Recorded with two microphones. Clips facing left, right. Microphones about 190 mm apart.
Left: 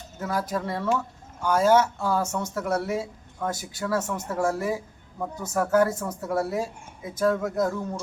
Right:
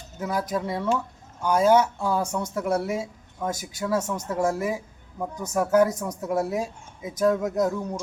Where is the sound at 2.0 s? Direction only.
20° right (ahead or behind).